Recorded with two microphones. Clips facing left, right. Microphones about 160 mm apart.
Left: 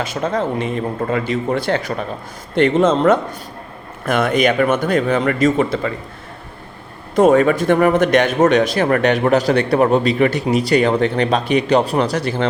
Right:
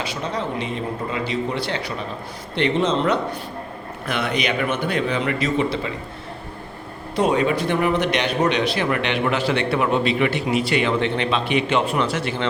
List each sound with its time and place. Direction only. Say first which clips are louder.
0.0 s a man's voice: left 6 dB; 50° left (ahead or behind)
7.2 s speech: left 7 dB; 50° left (ahead or behind)